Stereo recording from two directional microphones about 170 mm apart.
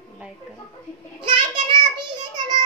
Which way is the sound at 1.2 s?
30° right (ahead or behind).